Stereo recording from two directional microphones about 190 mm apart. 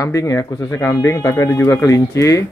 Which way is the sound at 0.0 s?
15° left (ahead or behind).